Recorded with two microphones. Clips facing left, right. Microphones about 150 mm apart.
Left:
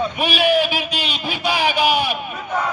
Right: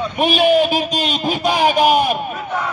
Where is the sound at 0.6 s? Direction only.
40° right (ahead or behind).